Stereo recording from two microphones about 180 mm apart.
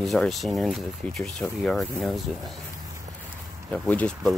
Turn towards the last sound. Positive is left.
turn(degrees=5)  # may be behind; listen again after turning